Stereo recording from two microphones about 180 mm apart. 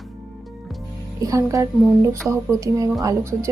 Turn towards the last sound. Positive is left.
turn(degrees=-20)  # may be behind; listen again after turning